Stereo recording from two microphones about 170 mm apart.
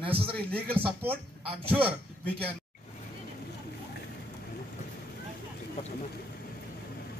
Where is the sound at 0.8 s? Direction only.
10° right (ahead or behind).